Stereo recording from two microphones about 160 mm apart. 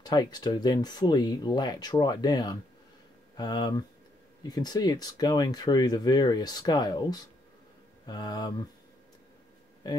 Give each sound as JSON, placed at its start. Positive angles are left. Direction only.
{"t": 0.0, "sound": "speech", "side_deg": 25}